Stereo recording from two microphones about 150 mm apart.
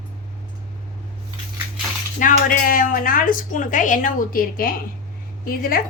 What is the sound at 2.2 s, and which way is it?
A woman's voice, 65° left (ahead or behind).